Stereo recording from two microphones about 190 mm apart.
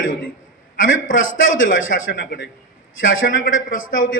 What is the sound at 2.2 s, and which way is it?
Speech, 75° left (ahead or behind).